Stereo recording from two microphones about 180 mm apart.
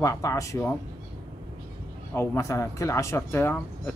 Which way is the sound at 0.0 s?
15° left (ahead or behind).